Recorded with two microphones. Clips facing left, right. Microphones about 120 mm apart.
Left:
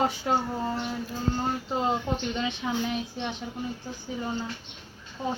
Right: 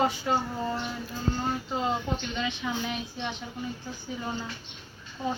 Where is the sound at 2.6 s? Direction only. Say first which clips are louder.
Left 3 dB; 30° left (ahead or behind).